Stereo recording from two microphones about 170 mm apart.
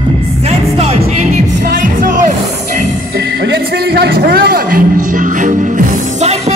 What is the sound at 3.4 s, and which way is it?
Music, 70° right (ahead or behind).